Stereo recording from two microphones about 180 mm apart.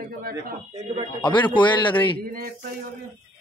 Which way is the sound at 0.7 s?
40° right (ahead or behind).